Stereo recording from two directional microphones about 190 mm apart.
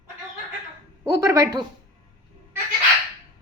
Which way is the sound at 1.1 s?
15° right (ahead or behind).